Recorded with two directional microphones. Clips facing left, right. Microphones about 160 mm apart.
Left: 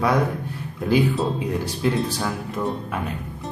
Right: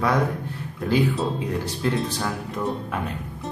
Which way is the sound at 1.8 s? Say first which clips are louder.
Left 2 dB; 5° left (ahead or behind).